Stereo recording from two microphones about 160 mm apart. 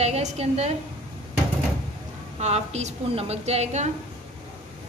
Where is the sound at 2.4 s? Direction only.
45° right (ahead or behind).